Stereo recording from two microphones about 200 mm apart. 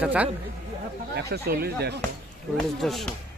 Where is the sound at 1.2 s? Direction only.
55° right (ahead or behind).